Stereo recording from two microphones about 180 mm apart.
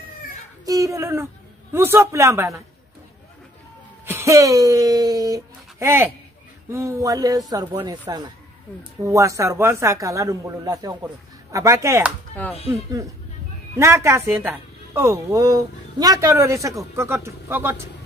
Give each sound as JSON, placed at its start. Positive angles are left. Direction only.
{"t": 0.7, "sound": "a woman's voice", "side_deg": -20}
{"t": 4.0, "sound": "speech", "side_deg": -15}
{"t": 9.0, "sound": "a woman's voice", "side_deg": -15}